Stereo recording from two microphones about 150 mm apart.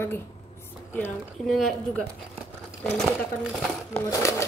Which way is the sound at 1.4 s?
Centre (ahead or behind).